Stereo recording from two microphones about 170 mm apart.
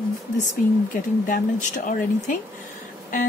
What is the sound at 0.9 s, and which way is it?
Speech, 50° left (ahead or behind).